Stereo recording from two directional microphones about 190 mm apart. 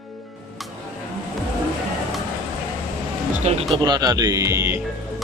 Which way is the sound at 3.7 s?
20° right (ahead or behind).